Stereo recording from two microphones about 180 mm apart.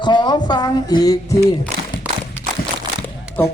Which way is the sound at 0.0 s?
25° left (ahead or behind).